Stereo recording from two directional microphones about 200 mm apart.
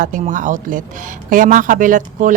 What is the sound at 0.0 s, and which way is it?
Speech, 40° right (ahead or behind).